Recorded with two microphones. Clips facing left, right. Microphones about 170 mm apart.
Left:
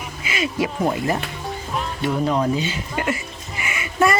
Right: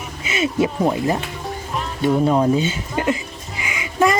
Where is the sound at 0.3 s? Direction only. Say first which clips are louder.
Right 4 dB; 20° right (ahead or behind).